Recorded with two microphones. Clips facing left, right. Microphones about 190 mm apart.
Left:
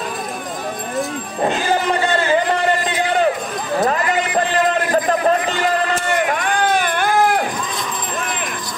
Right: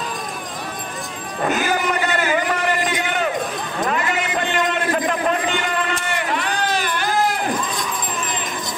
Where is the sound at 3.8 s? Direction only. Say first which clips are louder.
Left 2 dB; 35° left (ahead or behind); by 7.4 s 55° left (ahead or behind).